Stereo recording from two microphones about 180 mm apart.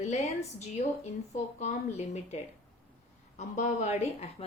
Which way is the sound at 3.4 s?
40° left (ahead or behind).